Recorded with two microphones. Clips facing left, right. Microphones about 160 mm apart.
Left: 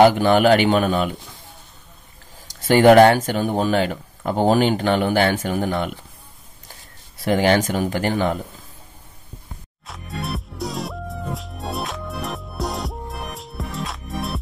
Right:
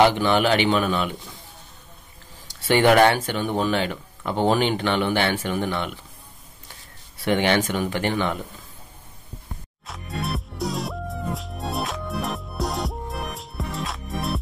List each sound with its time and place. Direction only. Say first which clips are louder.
0.0 s speech: left 5 dB; 45° left (ahead or behind)
2.4 s speech: left 5 dB; 40° left (ahead or behind)
7.2 s speech: left 3 dB; 40° left (ahead or behind)
9.8 s music: even; centre (ahead or behind)